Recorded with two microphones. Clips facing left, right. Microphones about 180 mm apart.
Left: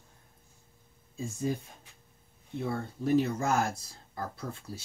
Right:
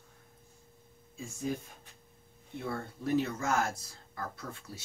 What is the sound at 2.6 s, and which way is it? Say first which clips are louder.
Speech: left 4 dB; 30° left (ahead or behind).